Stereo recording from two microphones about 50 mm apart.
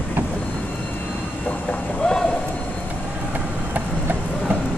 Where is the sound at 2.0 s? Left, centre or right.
Centre.